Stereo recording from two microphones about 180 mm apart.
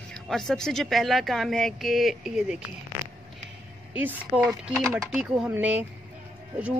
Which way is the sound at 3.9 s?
10° right (ahead or behind).